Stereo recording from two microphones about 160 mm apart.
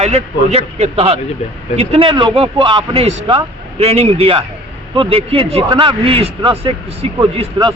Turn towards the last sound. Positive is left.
turn(degrees=-30)  # may be behind; listen again after turning